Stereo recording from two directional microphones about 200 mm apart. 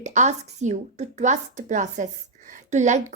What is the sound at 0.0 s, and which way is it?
A woman's voice, 35° right (ahead or behind).